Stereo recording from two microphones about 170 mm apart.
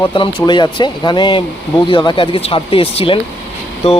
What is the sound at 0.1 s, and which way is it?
Speech, 30° left (ahead or behind).